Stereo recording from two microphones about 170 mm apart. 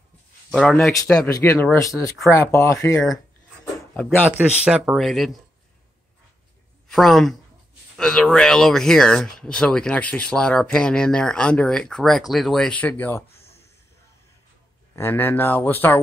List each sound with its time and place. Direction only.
0.5 s speech: centre (ahead or behind)
4.3 s speech: 5° right (ahead or behind)
6.9 s speech: centre (ahead or behind)
15.0 s speech: 10° left (ahead or behind)